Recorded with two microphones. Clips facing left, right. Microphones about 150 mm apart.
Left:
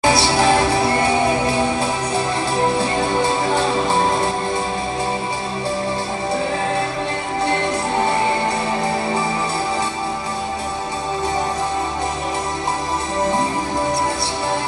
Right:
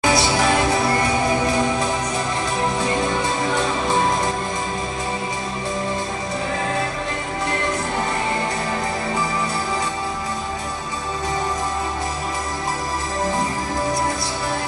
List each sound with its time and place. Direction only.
0.0 s music: 30° left (ahead or behind)
3.5 s music: 30° left (ahead or behind)